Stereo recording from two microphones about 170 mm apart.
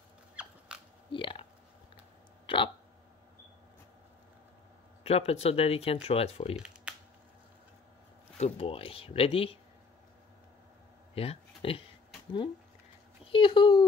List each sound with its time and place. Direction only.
0.4 s dog: 10° right (ahead or behind)
1.1 s a sound: 30° left (ahead or behind)
2.4 s hiccup: 30° left (ahead or behind)
5.0 s speech: 35° left (ahead or behind)
6.5 s computer keyboard: 5° right (ahead or behind)
8.4 s speech: 35° left (ahead or behind)
11.1 s speech: 35° left (ahead or behind)
13.2 s speech: 30° left (ahead or behind)